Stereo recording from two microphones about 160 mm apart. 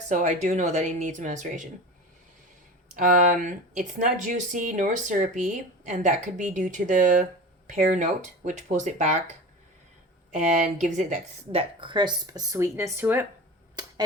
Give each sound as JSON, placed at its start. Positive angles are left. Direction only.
{"t": 0.1, "sound": "speech", "side_deg": -50}
{"t": 3.0, "sound": "speech", "side_deg": -50}
{"t": 10.3, "sound": "speech", "side_deg": -50}
{"t": 11.5, "sound": "speech", "side_deg": -30}